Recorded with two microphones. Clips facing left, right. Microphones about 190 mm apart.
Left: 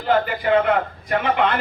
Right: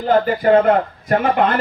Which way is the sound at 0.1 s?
45° right (ahead or behind).